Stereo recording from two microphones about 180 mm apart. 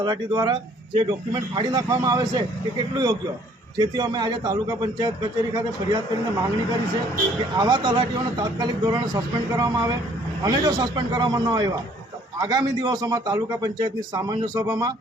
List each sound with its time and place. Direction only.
0.0 s speech: 20° right (ahead or behind)
7.5 s speech: 25° right (ahead or behind)